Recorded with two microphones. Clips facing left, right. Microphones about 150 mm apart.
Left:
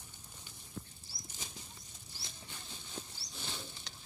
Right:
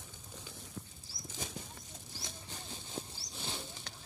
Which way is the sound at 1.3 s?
80° right.